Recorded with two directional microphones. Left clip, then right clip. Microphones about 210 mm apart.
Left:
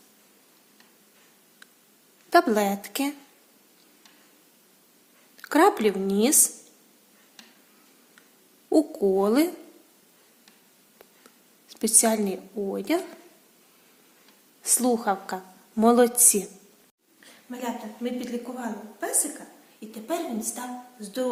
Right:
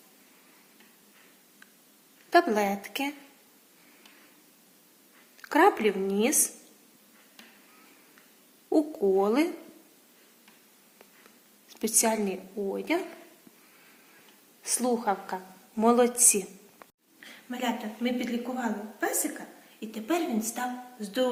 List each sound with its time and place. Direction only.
2.3 s a woman's voice: 55° left (ahead or behind)
5.4 s a woman's voice: 55° left (ahead or behind)
8.7 s a woman's voice: 50° left (ahead or behind)
11.7 s a woman's voice: 50° left (ahead or behind)
14.6 s a woman's voice: 55° left (ahead or behind)
17.2 s a woman's voice: 10° left (ahead or behind)